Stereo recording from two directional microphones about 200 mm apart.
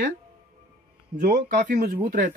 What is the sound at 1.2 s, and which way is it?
Speech, 40° right (ahead or behind).